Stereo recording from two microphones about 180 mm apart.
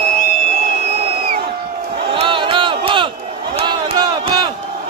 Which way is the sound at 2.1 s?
30° right (ahead or behind).